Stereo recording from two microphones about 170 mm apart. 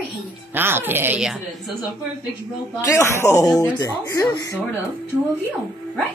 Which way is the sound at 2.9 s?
15° left (ahead or behind).